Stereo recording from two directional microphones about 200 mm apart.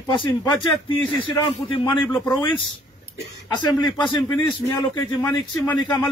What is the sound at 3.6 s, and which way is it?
A man's voice, 20° left (ahead or behind).